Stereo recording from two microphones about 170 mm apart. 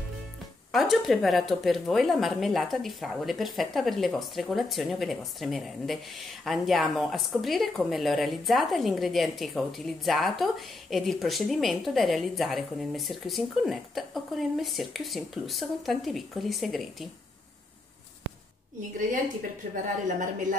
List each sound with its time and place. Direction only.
0.7 s speech: centre (ahead or behind)
19.7 s a woman's voice: 50° right (ahead or behind)